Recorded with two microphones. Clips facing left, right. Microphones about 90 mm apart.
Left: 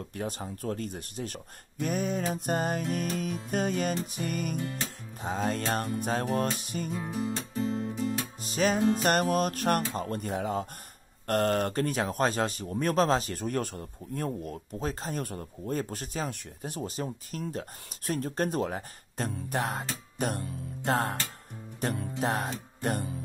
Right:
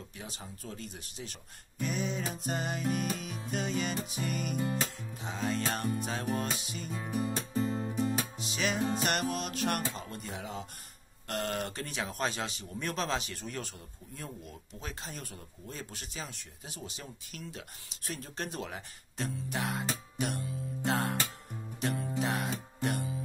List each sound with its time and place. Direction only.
0.1 s speech: 50° left (ahead or behind)
8.4 s speech: 40° left (ahead or behind)
22.2 s music: 40° left (ahead or behind)